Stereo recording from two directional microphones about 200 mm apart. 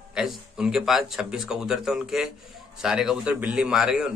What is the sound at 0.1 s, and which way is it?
A man's voice, 5° right (ahead or behind).